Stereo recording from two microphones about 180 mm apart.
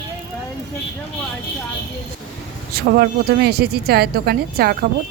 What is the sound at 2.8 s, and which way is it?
Speech, 60° right (ahead or behind).